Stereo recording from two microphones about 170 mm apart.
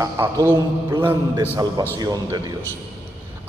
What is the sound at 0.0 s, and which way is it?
A man's voice, 15° right (ahead or behind).